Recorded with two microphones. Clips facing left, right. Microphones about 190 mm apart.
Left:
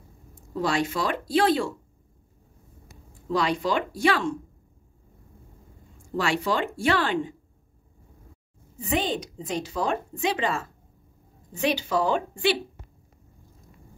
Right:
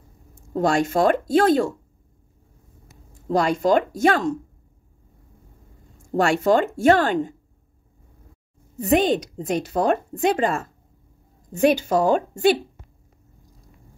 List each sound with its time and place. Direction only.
0.5 s speech: 45° right (ahead or behind)
3.2 s speech: 45° right (ahead or behind)
6.1 s speech: 45° right (ahead or behind)
9.4 s speech: 60° right (ahead or behind); by 12.5 s 45° right (ahead or behind)